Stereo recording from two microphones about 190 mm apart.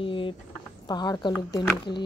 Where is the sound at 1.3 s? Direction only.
10° left (ahead or behind).